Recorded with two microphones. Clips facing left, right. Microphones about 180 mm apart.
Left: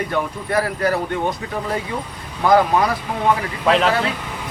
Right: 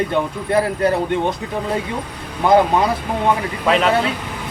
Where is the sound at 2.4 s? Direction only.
25° right (ahead or behind).